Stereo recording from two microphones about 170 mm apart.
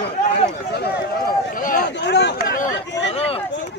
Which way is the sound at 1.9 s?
80° left.